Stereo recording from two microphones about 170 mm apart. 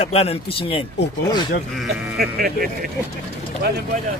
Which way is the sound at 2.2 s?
60° right (ahead or behind).